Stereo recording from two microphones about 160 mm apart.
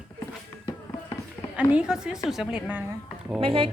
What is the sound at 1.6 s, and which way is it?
Speech, 5° right (ahead or behind).